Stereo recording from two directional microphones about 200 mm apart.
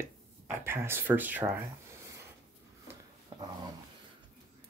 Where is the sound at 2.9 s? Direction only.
20° right (ahead or behind).